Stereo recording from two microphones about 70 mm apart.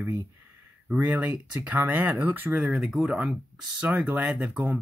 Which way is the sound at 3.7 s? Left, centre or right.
Right.